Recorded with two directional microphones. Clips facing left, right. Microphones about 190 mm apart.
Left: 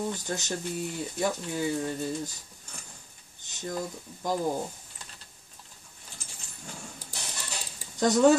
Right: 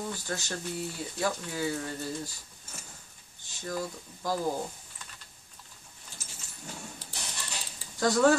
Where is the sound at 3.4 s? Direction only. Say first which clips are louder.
Left 1 dB; 20° left (ahead or behind).